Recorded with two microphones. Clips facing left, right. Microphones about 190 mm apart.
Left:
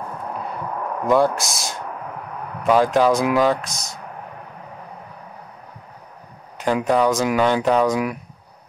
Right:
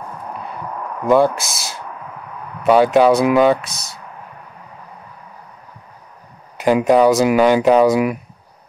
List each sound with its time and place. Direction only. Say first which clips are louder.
1.0 s speech: right 4 dB; centre (ahead or behind)
6.6 s speech: right 6 dB; 10° right (ahead or behind)